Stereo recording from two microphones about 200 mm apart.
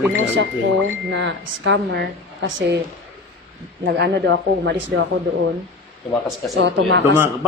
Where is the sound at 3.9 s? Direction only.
60° right (ahead or behind).